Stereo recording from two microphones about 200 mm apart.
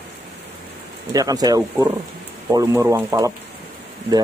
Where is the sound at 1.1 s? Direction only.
20° right (ahead or behind).